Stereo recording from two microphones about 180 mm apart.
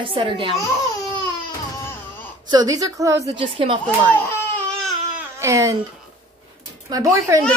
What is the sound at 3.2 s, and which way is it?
Speech, 30° right (ahead or behind).